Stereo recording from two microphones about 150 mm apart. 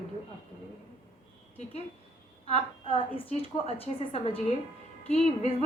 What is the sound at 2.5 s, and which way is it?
A woman's voice, 35° left (ahead or behind).